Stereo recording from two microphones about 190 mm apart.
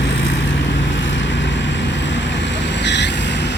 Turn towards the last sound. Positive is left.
turn(degrees=65)  # may be behind; listen again after turning